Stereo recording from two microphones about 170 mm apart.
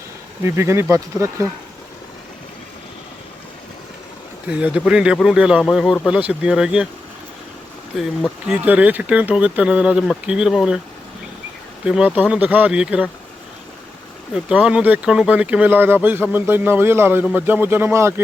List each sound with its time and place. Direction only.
0.4 s speech: 15° right (ahead or behind)
4.4 s speech: 5° right (ahead or behind)
7.9 s speech: centre (ahead or behind)
11.9 s speech: 5° right (ahead or behind)
14.3 s speech: 5° right (ahead or behind)